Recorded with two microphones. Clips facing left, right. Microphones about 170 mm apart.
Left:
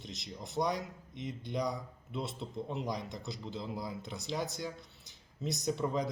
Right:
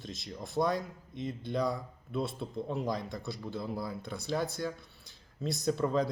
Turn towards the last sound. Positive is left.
turn(degrees=15)  # may be behind; listen again after turning